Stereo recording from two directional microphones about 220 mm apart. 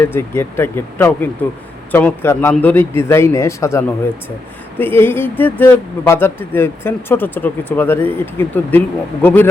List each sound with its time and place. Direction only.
0.0 s speech: 10° left (ahead or behind)